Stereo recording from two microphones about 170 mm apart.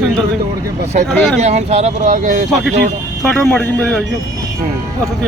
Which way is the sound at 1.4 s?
40° right (ahead or behind).